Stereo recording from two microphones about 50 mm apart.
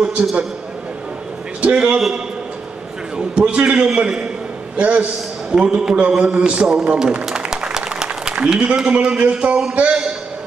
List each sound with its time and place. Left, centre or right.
0.0 s a man's voice: right
1.6 s a man's voice: right
3.2 s a man's voice: right
6.3 s applause: right
8.5 s a man's voice: centre